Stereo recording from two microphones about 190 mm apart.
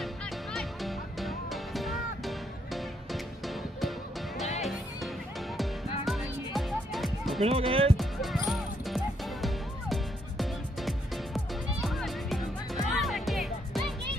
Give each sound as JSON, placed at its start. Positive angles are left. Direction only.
{"t": 0.0, "sound": "music", "side_deg": 0}
{"t": 5.6, "sound": "music", "side_deg": 0}
{"t": 7.4, "sound": "speech", "side_deg": -30}
{"t": 8.0, "sound": "music", "side_deg": 0}